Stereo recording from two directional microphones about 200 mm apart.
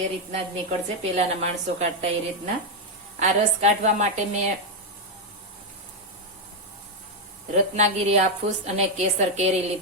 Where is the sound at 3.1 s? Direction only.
35° right (ahead or behind).